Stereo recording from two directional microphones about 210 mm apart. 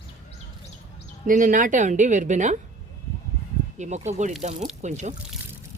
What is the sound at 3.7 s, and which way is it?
A woman's voice, 35° right (ahead or behind).